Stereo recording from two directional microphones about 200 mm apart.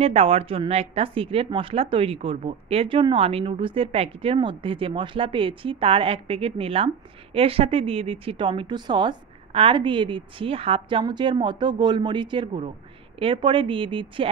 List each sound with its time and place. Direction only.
0.0 s a woman's voice: 30° right (ahead or behind)